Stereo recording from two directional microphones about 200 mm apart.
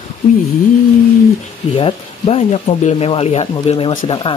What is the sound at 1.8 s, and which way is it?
Speech, 30° left (ahead or behind).